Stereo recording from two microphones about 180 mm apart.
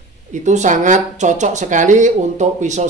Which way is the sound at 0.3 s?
40° right (ahead or behind).